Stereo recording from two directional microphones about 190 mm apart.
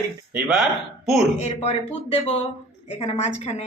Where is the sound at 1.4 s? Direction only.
35° left (ahead or behind).